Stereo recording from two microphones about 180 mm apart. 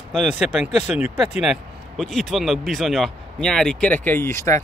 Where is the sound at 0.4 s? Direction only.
5° right (ahead or behind).